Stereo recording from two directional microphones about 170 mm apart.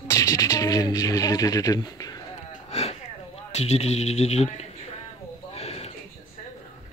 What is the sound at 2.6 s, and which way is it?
Sniff, 40° left (ahead or behind).